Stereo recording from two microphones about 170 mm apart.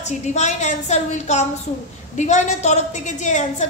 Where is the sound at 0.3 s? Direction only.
45° left (ahead or behind).